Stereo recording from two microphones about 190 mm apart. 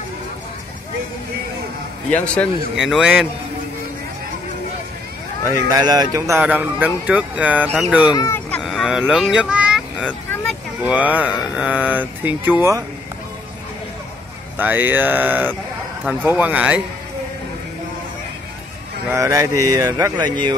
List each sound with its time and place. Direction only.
2.2 s a man's voice: centre (ahead or behind)
5.7 s speech: 20° right (ahead or behind)
8.1 s a sound: 15° left (ahead or behind)
8.6 s vehicle: centre (ahead or behind)
10.8 s speech: 10° right (ahead or behind)
14.6 s speech: 10° right (ahead or behind)
19.0 s speech: 15° right (ahead or behind)